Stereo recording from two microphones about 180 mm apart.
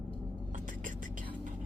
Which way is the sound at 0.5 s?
45° right (ahead or behind).